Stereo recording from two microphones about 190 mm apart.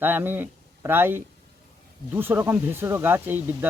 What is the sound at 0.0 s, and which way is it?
Speech, 10° right (ahead or behind).